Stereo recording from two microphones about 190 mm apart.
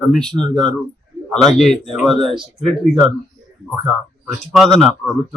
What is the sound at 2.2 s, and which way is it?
Speech, 25° right (ahead or behind).